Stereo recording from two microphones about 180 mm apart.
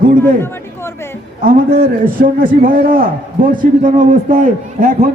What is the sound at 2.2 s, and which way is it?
A man's voice, 50° right (ahead or behind).